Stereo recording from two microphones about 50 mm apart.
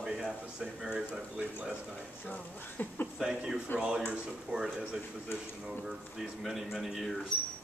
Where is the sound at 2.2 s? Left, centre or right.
Left.